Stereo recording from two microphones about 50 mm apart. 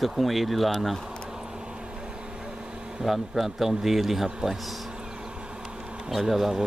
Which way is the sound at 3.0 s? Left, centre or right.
Centre.